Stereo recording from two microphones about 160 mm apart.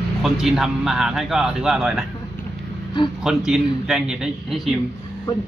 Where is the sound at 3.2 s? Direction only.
5° right (ahead or behind).